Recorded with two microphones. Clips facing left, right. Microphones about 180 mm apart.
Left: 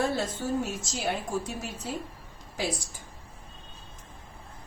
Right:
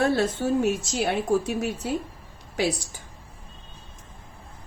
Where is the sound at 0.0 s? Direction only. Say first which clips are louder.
Right 6 dB; 65° right (ahead or behind).